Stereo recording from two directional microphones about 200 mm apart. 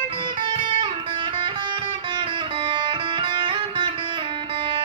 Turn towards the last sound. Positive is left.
turn(degrees=-25)  # may be behind; listen again after turning